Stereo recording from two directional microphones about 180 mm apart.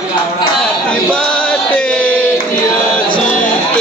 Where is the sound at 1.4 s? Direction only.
5° left (ahead or behind).